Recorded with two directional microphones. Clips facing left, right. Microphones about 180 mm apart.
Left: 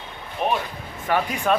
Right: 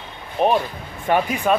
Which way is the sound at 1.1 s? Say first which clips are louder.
Right 4 dB; 25° right (ahead or behind).